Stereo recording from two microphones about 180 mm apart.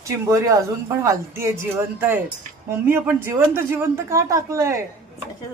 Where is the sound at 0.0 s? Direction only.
15° right (ahead or behind).